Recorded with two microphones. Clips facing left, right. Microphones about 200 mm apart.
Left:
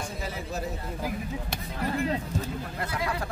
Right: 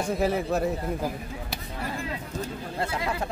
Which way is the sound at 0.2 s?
60° right (ahead or behind).